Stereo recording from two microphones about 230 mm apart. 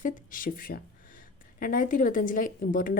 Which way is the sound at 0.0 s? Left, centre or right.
Left.